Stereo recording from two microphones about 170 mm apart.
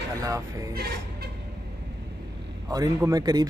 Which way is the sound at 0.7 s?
65° right (ahead or behind).